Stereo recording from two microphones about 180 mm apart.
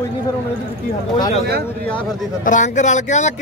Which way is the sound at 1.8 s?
5° left (ahead or behind).